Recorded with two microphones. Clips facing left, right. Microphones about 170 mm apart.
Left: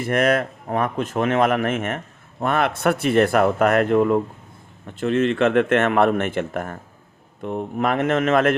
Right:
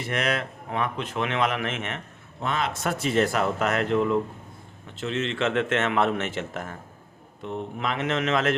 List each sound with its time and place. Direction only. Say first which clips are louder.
0.0 s speech: left 8 dB; 50° left (ahead or behind)
2.4 s speech: left 7 dB; 60° left (ahead or behind)